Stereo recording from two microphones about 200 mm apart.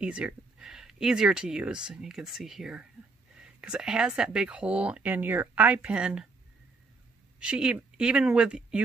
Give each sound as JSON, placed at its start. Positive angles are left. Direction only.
{"t": 0.0, "sound": "speech", "side_deg": -5}
{"t": 7.3, "sound": "speech", "side_deg": -5}